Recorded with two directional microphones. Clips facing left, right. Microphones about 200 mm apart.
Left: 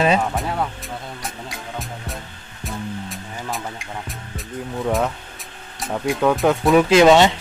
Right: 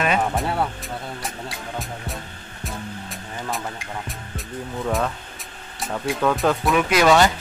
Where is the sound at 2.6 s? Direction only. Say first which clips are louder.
Left 4 dB; centre (ahead or behind).